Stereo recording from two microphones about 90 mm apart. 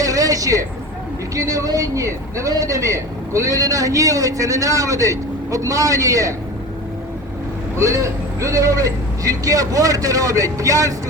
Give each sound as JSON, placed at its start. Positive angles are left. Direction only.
{"t": 0.0, "sound": "a sound", "side_deg": -40}
{"t": 1.4, "sound": "a man's voice", "side_deg": -40}
{"t": 7.8, "sound": "a man's voice", "side_deg": -35}